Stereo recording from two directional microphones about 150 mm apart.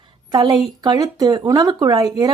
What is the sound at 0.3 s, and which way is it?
A woman's voice, 30° right (ahead or behind).